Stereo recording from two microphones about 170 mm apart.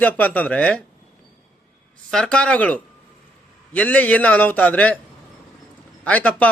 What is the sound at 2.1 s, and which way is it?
A man's voice, 5° left (ahead or behind).